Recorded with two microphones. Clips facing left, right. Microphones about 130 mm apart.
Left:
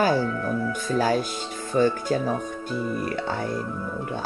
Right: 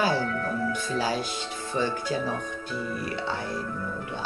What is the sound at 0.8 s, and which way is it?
Speech, 50° left (ahead or behind).